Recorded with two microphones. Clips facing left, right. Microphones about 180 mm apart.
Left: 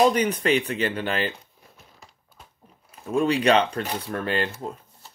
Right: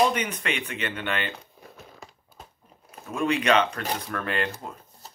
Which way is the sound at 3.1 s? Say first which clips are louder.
Left 3 dB; 35° left (ahead or behind).